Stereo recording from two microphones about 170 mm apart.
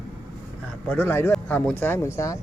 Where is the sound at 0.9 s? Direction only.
10° left (ahead or behind).